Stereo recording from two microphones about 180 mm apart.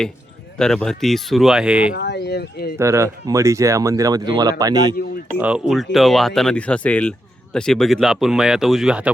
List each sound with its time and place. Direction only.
0.6 s speech: 5° left (ahead or behind)
2.0 s a sound: 65° left (ahead or behind)
2.7 s speech: 15° right (ahead or behind)
5.4 s speech: 5° right (ahead or behind)